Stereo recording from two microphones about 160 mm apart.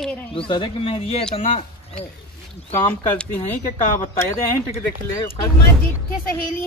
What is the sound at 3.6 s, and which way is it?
Speech, 50° left (ahead or behind).